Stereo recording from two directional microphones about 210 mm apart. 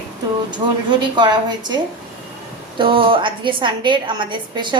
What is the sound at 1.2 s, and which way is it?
Speech, 20° right (ahead or behind).